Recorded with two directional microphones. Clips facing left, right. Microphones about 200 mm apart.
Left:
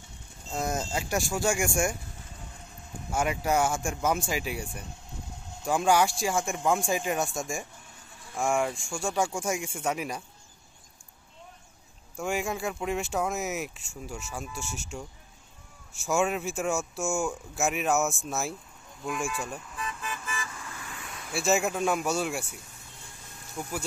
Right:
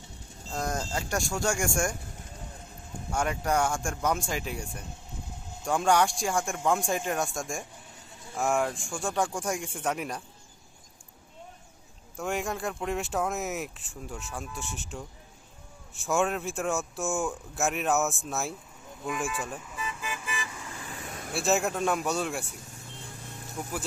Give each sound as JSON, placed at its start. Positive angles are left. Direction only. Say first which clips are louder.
{"t": 0.5, "sound": "speech", "louder": "left 1 dB", "side_deg": 5}
{"t": 3.1, "sound": "speech", "louder": "left 1 dB", "side_deg": 5}
{"t": 12.2, "sound": "speech", "louder": "left 1 dB", "side_deg": 0}
{"t": 16.0, "sound": "speech", "louder": "even", "side_deg": 0}
{"t": 19.0, "sound": "vehicle", "louder": "even", "side_deg": 0}
{"t": 20.9, "sound": "vehicle", "louder": "right 2 dB", "side_deg": -45}
{"t": 21.4, "sound": "speech", "louder": "left 1 dB", "side_deg": 0}
{"t": 23.6, "sound": "speech", "louder": "left 1 dB", "side_deg": -5}